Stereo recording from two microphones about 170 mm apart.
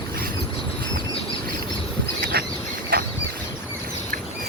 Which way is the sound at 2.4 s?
60° right (ahead or behind).